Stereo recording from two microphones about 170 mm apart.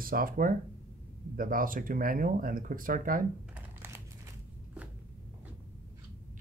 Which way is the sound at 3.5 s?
15° right (ahead or behind).